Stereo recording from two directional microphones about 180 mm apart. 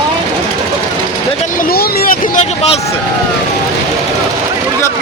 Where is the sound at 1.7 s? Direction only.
50° left (ahead or behind).